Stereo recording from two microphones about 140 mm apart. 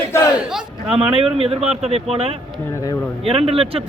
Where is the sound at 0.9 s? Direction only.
45° right (ahead or behind).